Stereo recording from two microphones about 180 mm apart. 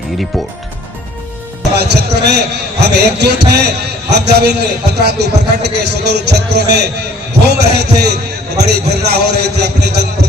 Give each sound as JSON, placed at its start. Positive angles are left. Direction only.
{"t": 1.7, "sound": "a man's voice", "side_deg": -65}